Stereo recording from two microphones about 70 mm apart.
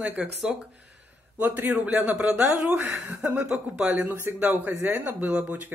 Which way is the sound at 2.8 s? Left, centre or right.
Right.